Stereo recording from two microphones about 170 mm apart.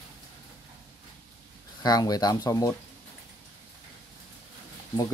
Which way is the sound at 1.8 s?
20° left (ahead or behind).